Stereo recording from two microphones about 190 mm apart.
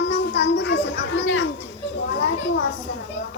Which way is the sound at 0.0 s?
65° left (ahead or behind).